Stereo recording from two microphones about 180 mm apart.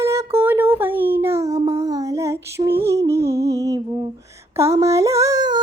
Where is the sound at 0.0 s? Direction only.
15° right (ahead or behind).